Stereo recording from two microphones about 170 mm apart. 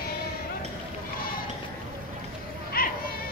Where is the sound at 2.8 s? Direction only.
60° left (ahead or behind).